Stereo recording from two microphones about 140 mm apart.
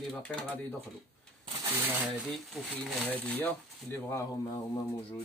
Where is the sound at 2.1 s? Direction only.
Centre (ahead or behind).